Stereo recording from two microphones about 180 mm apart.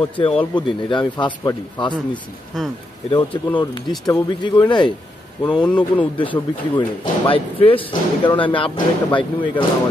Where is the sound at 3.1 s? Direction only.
25° left (ahead or behind).